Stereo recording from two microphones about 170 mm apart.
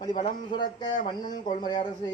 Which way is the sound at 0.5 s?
25° left (ahead or behind).